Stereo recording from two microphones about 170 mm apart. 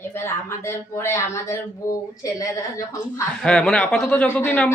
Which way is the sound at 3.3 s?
5° left (ahead or behind).